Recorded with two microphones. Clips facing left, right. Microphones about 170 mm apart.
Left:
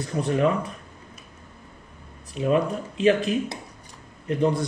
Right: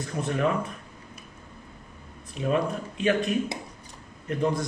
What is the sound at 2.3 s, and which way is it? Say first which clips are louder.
A man's voice: left 4 dB; 30° left (ahead or behind).